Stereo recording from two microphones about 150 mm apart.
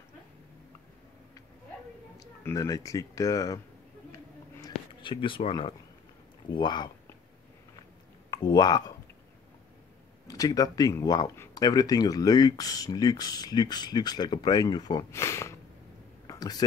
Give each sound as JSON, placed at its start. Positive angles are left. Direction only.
{"t": 2.1, "sound": "speech", "side_deg": 20}
{"t": 4.6, "sound": "a sound", "side_deg": 30}
{"t": 6.5, "sound": "speech", "side_deg": 30}
{"t": 8.3, "sound": "speech", "side_deg": 30}
{"t": 10.2, "sound": "speech", "side_deg": 25}
{"t": 16.3, "sound": "a sound", "side_deg": 25}